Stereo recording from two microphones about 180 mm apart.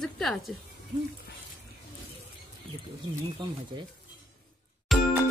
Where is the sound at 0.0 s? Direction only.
Centre (ahead or behind).